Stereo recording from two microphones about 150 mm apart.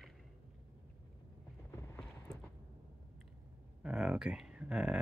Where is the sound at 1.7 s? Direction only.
15° left (ahead or behind).